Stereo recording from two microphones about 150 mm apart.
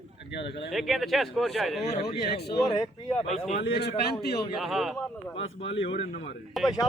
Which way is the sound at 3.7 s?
90° left.